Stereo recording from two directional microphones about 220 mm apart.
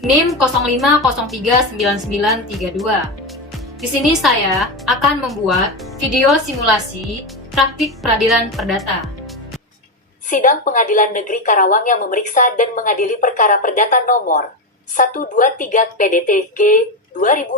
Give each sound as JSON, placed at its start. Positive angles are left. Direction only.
{"t": 0.0, "sound": "a woman's voice", "side_deg": 0}
{"t": 10.2, "sound": "a woman's voice", "side_deg": 35}